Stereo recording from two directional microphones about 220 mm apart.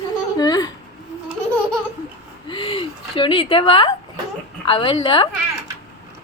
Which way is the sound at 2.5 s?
25° left (ahead or behind).